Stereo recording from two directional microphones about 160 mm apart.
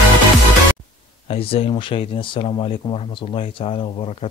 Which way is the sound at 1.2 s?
35° left (ahead or behind).